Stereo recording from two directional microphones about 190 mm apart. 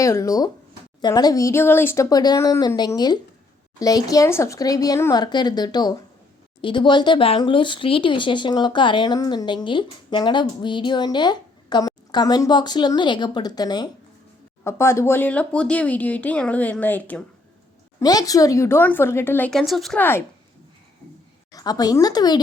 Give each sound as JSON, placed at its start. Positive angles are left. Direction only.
{"t": 0.0, "sound": "speech", "side_deg": 15}
{"t": 18.0, "sound": "speech", "side_deg": 20}
{"t": 21.5, "sound": "speech", "side_deg": 20}